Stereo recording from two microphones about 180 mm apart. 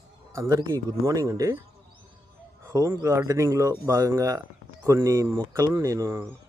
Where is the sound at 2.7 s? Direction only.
15° right (ahead or behind).